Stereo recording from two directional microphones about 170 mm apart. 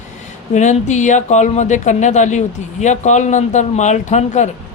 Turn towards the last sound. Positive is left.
turn(degrees=45)  # may be behind; listen again after turning